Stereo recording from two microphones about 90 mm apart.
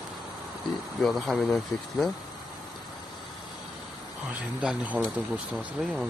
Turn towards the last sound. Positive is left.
turn(degrees=-5)  # may be behind; listen again after turning